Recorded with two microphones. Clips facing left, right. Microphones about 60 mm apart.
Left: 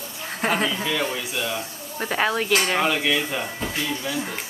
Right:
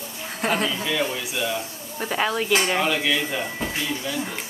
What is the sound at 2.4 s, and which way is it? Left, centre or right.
Speech, centre.